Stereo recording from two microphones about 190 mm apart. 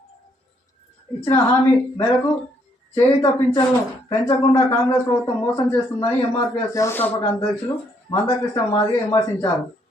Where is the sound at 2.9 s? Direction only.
20° left (ahead or behind).